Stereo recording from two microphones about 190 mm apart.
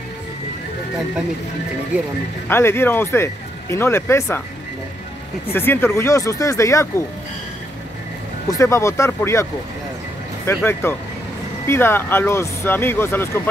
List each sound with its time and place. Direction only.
2.4 s speech: 10° left (ahead or behind)
5.5 s speech: 10° left (ahead or behind)
8.5 s speech: 15° left (ahead or behind)